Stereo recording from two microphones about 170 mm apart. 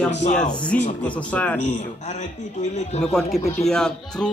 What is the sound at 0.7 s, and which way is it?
Speech, 10° left (ahead or behind).